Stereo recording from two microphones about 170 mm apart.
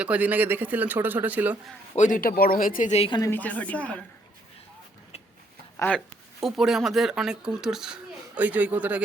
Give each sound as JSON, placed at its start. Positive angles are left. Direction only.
{"t": 0.0, "sound": "speech", "side_deg": -10}
{"t": 2.0, "sound": "speech", "side_deg": 50}
{"t": 3.1, "sound": "a woman's voice", "side_deg": 20}
{"t": 5.7, "sound": "speech", "side_deg": 10}
{"t": 6.1, "sound": "speech", "side_deg": 0}